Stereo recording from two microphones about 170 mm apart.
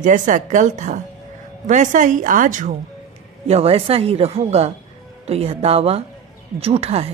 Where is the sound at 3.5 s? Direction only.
35° right (ahead or behind).